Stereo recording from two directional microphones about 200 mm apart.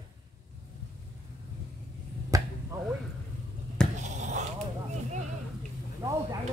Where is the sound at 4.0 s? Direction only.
35° right (ahead or behind).